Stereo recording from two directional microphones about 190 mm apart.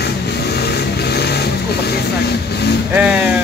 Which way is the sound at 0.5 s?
55° left (ahead or behind).